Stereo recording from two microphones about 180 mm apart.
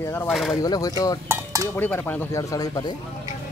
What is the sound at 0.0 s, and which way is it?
Speech, 10° left (ahead or behind).